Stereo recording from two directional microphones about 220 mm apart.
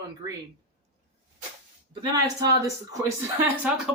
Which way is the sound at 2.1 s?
15° right (ahead or behind).